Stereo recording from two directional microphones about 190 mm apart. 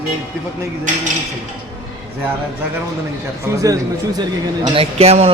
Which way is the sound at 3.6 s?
20° right (ahead or behind).